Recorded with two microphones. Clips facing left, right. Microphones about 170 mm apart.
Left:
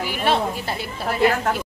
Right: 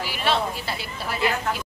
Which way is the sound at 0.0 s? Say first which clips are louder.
Left 3 dB; 50° left (ahead or behind).